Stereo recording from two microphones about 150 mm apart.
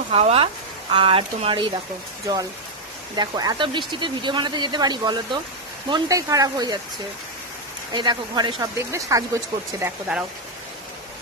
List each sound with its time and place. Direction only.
0.1 s speech: 40° right (ahead or behind)
2.2 s speech: 25° right (ahead or behind)
7.9 s speech: 30° right (ahead or behind)